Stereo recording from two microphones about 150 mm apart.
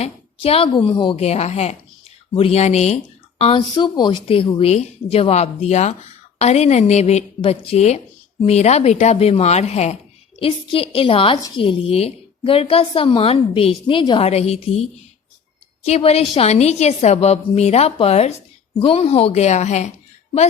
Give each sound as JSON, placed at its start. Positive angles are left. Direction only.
{"t": 0.0, "sound": "a woman's voice", "side_deg": 40}
{"t": 1.2, "sound": "a woman's voice", "side_deg": 45}
{"t": 3.8, "sound": "a woman's voice", "side_deg": 30}
{"t": 14.3, "sound": "a woman's voice", "side_deg": 45}